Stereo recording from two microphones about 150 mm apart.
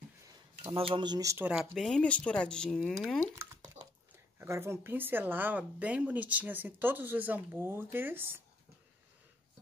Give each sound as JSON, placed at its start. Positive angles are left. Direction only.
{"t": 0.7, "sound": "speech", "side_deg": -35}
{"t": 1.5, "sound": "speech", "side_deg": -5}
{"t": 3.3, "sound": "drip", "side_deg": -20}
{"t": 4.4, "sound": "a woman's voice", "side_deg": -15}